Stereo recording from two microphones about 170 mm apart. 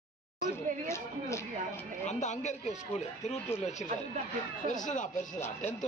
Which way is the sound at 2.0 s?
45° left (ahead or behind).